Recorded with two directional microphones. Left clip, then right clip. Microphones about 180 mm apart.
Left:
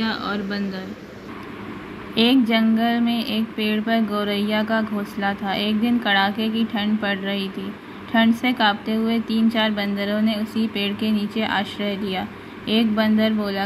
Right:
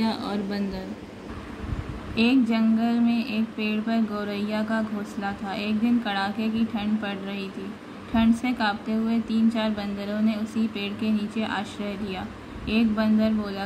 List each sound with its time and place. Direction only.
0.0 s speech: 10° right (ahead or behind)
2.1 s a woman's voice: 25° left (ahead or behind)